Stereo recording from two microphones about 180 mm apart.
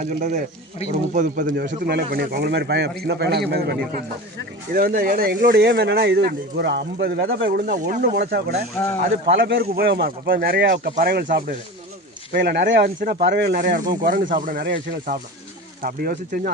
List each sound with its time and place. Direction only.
0.0 s speech: 50° right (ahead or behind)
1.6 s speech: 65° right (ahead or behind)
7.7 s speech: 45° right (ahead or behind)
8.1 s speech: 60° right (ahead or behind)
8.8 s speech: 15° left (ahead or behind)
9.3 s speech: 65° right (ahead or behind)
13.0 s speech: 55° right (ahead or behind)